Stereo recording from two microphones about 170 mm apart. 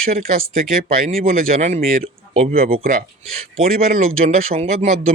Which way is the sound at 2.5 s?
60° right (ahead or behind).